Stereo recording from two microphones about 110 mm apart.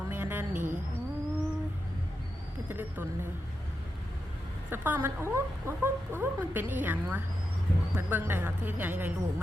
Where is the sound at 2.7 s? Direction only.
20° right (ahead or behind).